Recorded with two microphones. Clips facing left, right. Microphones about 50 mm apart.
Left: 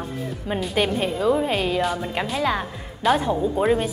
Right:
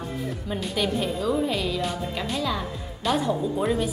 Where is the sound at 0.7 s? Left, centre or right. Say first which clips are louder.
Left 3 dB; left.